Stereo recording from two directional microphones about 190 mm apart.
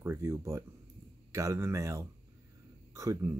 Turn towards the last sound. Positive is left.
turn(degrees=-15)  # may be behind; listen again after turning